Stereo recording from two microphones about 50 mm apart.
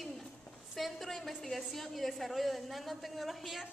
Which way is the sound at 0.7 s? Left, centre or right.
Centre.